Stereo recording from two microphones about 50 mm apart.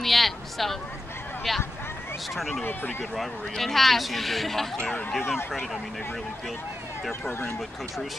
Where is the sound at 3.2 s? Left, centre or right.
Centre.